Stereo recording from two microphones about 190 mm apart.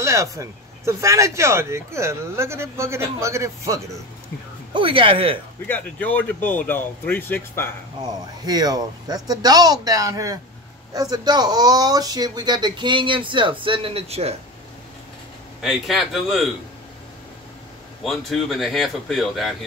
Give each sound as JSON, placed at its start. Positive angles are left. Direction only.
{"t": 0.0, "sound": "speech", "side_deg": -15}
{"t": 4.7, "sound": "speech", "side_deg": -25}
{"t": 5.7, "sound": "speech", "side_deg": 10}
{"t": 8.0, "sound": "speech", "side_deg": -20}
{"t": 15.6, "sound": "speech", "side_deg": 0}
{"t": 18.0, "sound": "speech", "side_deg": 0}